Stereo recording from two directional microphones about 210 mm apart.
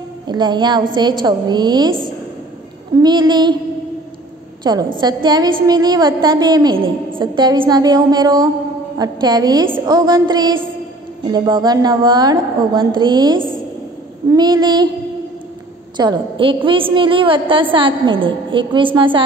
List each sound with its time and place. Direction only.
0.3 s a woman's voice: 20° right (ahead or behind)
3.0 s a woman's voice: 20° right (ahead or behind)
4.9 s a woman's voice: 20° right (ahead or behind)
16.0 s a woman's voice: 20° right (ahead or behind)